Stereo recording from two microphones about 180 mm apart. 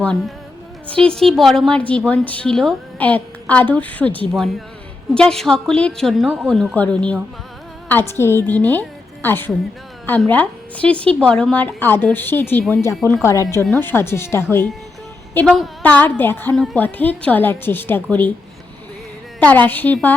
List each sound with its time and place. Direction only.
0.0 s a woman's voice: 5° left (ahead or behind)
15.4 s a woman's voice: centre (ahead or behind)
19.4 s a woman's voice: 10° left (ahead or behind)